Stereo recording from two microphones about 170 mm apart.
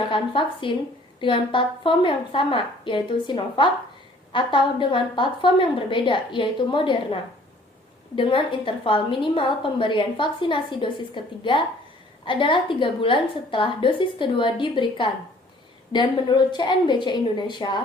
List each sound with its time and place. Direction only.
0.1 s a woman's voice: 30° left (ahead or behind)